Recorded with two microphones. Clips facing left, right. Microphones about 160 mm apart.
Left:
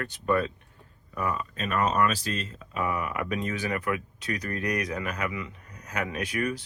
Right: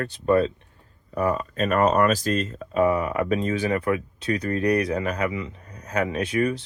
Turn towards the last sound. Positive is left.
turn(degrees=-25)  # may be behind; listen again after turning